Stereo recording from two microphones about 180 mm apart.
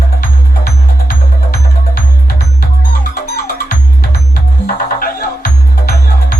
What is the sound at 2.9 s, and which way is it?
Music, 60° left (ahead or behind).